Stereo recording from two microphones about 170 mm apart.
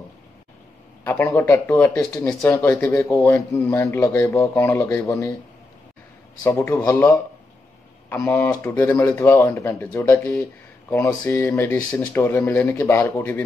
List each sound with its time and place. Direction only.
1.0 s speech: 15° left (ahead or behind)
6.4 s speech: 15° left (ahead or behind)